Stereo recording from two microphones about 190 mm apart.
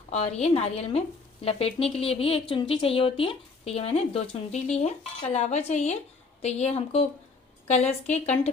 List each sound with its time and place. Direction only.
0.1 s speech: 35° left (ahead or behind)